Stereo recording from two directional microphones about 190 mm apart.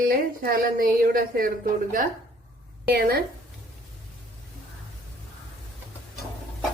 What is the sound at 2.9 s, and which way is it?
Speech, 55° right (ahead or behind).